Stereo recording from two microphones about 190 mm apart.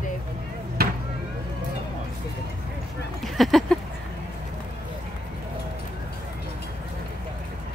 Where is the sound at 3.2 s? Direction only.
Centre (ahead or behind).